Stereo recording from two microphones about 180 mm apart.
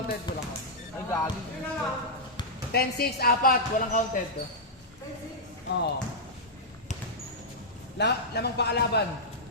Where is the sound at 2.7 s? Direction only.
60° left (ahead or behind).